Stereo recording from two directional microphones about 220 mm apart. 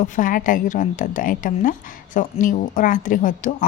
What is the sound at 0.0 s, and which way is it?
Speech, 40° left (ahead or behind).